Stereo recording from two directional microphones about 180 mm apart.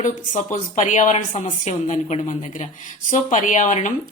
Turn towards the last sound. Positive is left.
turn(degrees=40)  # may be behind; listen again after turning